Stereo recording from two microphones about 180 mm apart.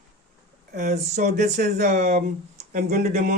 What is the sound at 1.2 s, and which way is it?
Speech, 40° right (ahead or behind).